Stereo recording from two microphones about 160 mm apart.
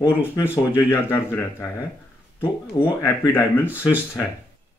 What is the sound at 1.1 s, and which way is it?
Speech, 15° left (ahead or behind).